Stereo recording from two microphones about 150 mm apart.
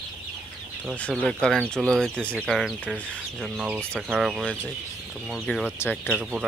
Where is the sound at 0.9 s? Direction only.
10° left (ahead or behind).